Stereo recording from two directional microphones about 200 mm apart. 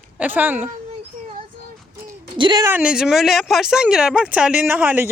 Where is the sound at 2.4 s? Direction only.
20° right (ahead or behind).